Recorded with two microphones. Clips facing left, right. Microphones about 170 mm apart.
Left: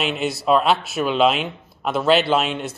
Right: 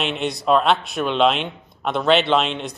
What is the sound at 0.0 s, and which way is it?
Speech, centre (ahead or behind).